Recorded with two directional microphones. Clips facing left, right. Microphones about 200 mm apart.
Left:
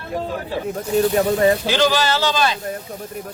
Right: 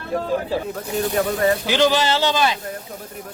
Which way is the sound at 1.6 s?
15° right (ahead or behind).